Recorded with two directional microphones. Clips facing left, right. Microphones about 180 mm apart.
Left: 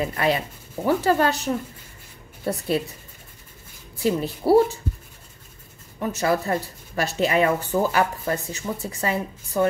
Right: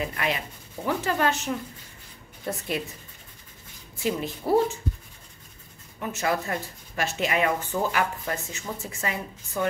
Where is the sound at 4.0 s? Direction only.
35° left (ahead or behind).